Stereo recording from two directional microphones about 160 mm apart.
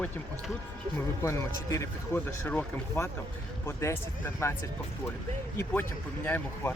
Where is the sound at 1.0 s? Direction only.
15° left (ahead or behind).